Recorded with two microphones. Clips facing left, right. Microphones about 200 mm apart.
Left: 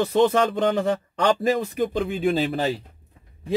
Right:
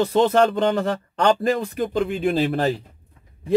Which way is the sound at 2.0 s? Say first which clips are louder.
Right 1 dB; centre (ahead or behind).